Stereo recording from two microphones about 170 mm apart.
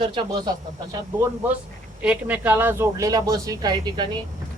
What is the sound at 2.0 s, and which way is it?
Speech, 10° right (ahead or behind).